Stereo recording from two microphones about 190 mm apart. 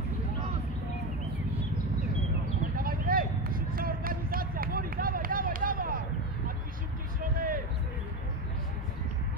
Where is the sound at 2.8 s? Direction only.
50° right (ahead or behind).